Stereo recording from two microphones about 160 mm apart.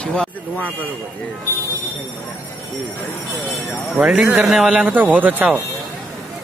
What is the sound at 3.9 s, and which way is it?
Speech, 5° right (ahead or behind).